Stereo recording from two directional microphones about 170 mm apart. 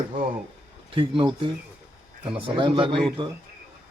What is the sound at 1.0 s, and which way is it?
Speech, 30° right (ahead or behind).